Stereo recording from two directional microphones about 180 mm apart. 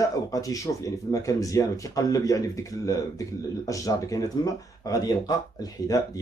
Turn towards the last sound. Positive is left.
turn(degrees=20)  # may be behind; listen again after turning